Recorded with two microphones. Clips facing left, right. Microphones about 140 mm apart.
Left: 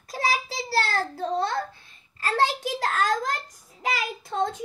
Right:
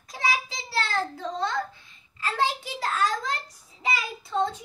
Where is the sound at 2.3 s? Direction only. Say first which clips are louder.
Left 3 dB; 90° left.